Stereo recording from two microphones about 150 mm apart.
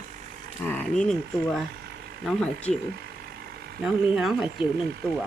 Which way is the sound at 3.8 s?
5° right (ahead or behind).